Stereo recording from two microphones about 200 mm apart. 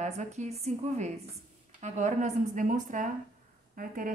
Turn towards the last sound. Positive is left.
turn(degrees=-45)  # may be behind; listen again after turning